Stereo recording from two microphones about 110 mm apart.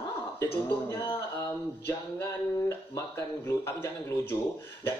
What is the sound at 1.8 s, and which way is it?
A man's voice, 25° left (ahead or behind).